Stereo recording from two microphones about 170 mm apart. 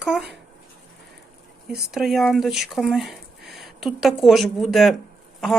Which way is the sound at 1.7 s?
75° right (ahead or behind).